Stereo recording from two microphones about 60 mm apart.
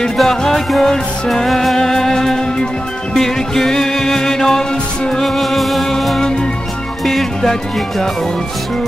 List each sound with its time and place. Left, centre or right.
0.2 s music: centre